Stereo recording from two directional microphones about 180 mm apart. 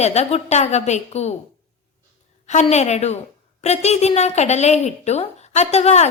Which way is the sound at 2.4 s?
40° left (ahead or behind).